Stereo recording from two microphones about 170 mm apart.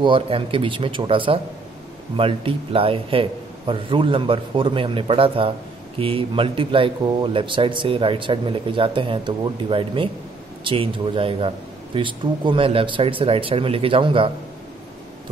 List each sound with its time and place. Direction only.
0.0 s a man's voice: 30° right (ahead or behind)